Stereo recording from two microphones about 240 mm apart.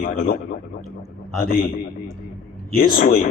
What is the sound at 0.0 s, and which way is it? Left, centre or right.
Speech, left.